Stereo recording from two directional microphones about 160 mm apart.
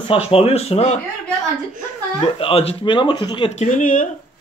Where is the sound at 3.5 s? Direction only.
45° left (ahead or behind).